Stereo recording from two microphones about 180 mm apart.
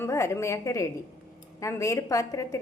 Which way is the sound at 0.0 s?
15° left (ahead or behind).